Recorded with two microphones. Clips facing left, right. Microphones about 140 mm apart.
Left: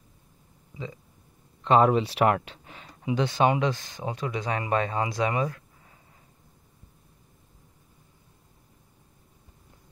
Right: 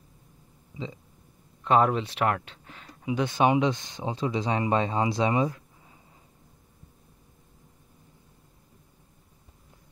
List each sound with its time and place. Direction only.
1.6 s speech: 5° right (ahead or behind)
1.9 s speech: 10° left (ahead or behind)
3.3 s speech: 15° right (ahead or behind)